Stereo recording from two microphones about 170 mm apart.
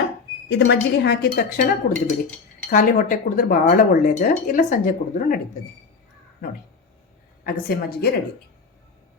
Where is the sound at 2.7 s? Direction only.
50° left (ahead or behind).